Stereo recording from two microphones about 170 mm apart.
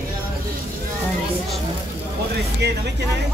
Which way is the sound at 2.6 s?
80° right.